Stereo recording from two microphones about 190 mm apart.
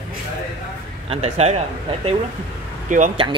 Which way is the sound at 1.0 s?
35° right (ahead or behind).